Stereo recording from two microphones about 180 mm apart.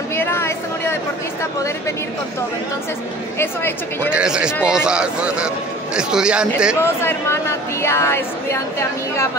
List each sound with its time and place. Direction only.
0.1 s a sound: 15° left (ahead or behind)
1.4 s a woman's voice: 15° left (ahead or behind)
3.3 s a woman's voice: 10° left (ahead or behind)
4.1 s speech: 5° right (ahead or behind)
6.8 s a woman's voice: 15° left (ahead or behind)